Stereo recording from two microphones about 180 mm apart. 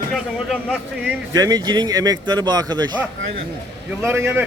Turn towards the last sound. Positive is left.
turn(degrees=-10)  # may be behind; listen again after turning